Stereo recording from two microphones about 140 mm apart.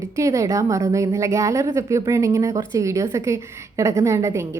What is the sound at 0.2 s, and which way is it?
Speech, 20° right (ahead or behind).